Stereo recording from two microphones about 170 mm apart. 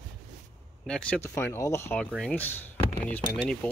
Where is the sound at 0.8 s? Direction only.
5° left (ahead or behind).